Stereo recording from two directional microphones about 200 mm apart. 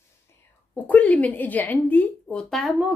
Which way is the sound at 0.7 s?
10° left (ahead or behind).